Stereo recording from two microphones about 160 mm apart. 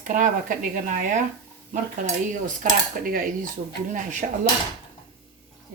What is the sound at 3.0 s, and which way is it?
Speech, 55° right (ahead or behind).